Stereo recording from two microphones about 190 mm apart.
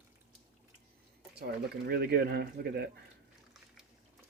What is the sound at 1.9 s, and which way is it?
Speech, 55° right (ahead or behind).